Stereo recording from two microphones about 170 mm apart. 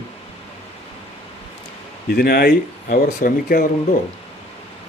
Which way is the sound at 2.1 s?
65° left (ahead or behind).